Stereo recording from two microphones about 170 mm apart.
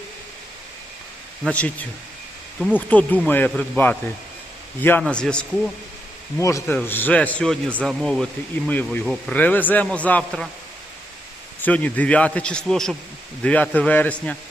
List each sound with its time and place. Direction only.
1.5 s a man's voice: 10° left (ahead or behind)
2.7 s a man's voice: 10° left (ahead or behind)
6.4 s a man's voice: 20° left (ahead or behind)
11.6 s a man's voice: 10° left (ahead or behind)